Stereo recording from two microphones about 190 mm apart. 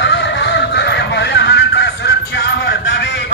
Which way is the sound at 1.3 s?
65° left (ahead or behind).